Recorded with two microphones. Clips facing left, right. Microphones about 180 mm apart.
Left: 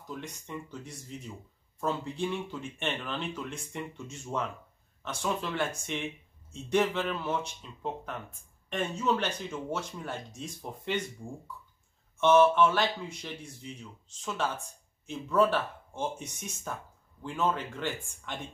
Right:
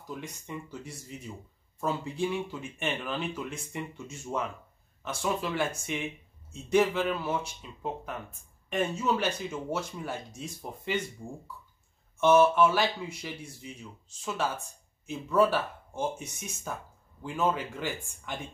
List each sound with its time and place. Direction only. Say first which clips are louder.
0.1 s speech: right 1 dB; 5° right (ahead or behind)
12.2 s speech: even; 5° right (ahead or behind)